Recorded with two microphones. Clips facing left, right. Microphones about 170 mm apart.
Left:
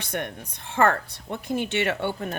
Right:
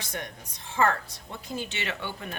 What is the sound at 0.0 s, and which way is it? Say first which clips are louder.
A woman's voice: left 6 dB; 60° left (ahead or behind).